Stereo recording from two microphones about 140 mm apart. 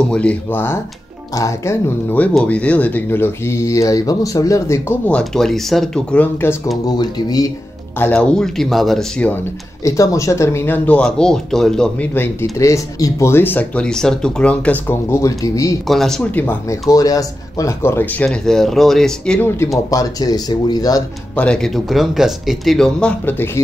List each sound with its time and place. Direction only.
0.1 s speech: 10° left (ahead or behind)
6.9 s speech: 30° left (ahead or behind)
8.0 s speech: 10° left (ahead or behind)
9.8 s speech: 20° left (ahead or behind)
15.9 s speech: 5° left (ahead or behind)
16.9 s speech: 25° left (ahead or behind); by 19.5 s 5° left (ahead or behind)
19.9 s speech: 25° left (ahead or behind)
21.4 s speech: 5° left (ahead or behind)